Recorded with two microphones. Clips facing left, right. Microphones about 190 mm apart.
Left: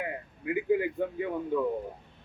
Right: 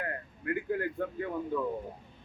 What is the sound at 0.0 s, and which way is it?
A man's voice, 10° left (ahead or behind).